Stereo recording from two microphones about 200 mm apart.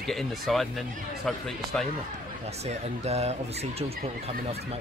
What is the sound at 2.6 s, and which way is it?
Speech, 30° right (ahead or behind).